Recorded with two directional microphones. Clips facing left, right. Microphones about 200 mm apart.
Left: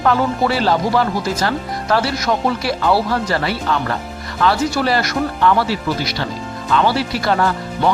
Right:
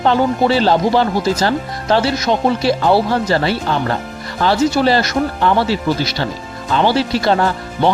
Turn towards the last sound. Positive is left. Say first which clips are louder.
# right 2 dB
turn(degrees=-30)  # may be behind; listen again after turning